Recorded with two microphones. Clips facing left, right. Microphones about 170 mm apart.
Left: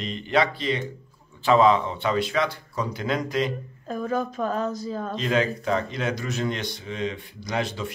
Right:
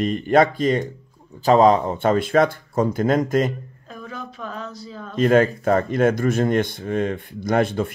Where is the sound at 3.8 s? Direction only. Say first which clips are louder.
Left 10 dB; 45° left (ahead or behind).